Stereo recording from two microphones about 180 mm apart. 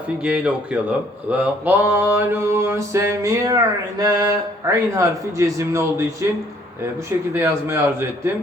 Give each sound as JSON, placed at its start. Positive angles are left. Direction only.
{"t": 0.2, "sound": "mantra", "side_deg": -5}